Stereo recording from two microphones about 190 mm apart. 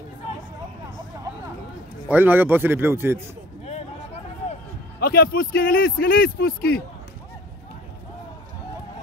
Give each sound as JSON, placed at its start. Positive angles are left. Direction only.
{"t": 2.0, "sound": "speech", "side_deg": -10}
{"t": 3.6, "sound": "a sound", "side_deg": 35}
{"t": 5.0, "sound": "speech", "side_deg": 55}